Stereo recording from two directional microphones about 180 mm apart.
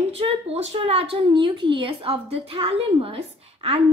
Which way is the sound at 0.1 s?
35° right (ahead or behind).